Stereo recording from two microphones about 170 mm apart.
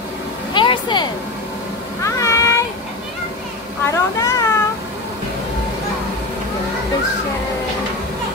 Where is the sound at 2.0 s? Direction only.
15° left (ahead or behind).